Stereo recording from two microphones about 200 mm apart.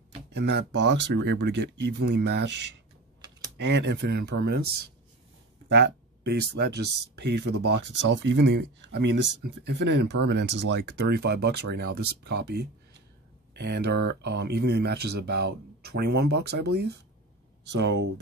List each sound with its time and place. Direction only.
0.3 s speech: 55° right (ahead or behind)
3.5 s speech: 60° right (ahead or behind)
5.7 s speech: 55° right (ahead or behind)